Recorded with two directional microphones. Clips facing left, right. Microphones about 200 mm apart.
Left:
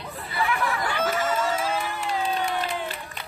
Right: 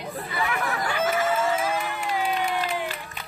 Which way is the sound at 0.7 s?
40° right (ahead or behind).